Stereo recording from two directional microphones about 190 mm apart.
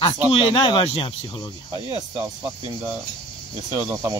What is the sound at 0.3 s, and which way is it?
Speech, 30° left (ahead or behind).